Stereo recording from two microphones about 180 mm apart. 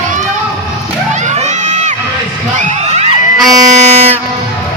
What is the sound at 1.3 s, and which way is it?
Children shouting, 40° right (ahead or behind).